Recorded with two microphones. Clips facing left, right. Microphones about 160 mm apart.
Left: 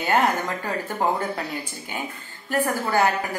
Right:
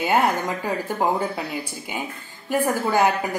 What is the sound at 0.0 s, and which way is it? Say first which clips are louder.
A woman's voice: right 1 dB; 10° right (ahead or behind).